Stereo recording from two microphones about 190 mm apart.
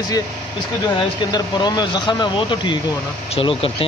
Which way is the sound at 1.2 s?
20° left (ahead or behind).